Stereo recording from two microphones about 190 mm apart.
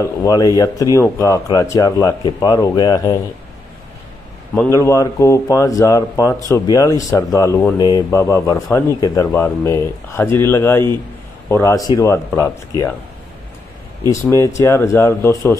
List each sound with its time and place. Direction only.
0.0 s speech: 20° left (ahead or behind)
4.6 s speech: 15° left (ahead or behind)
14.0 s speech: 15° left (ahead or behind)